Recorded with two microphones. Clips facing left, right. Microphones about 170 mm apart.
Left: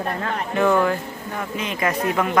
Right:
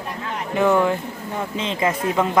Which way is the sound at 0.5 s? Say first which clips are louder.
Right 1 dB; 15° right (ahead or behind).